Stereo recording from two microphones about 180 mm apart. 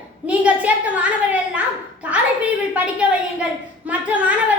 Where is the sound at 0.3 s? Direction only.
10° right (ahead or behind).